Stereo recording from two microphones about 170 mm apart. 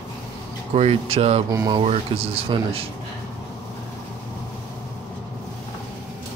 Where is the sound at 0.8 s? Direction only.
35° right (ahead or behind).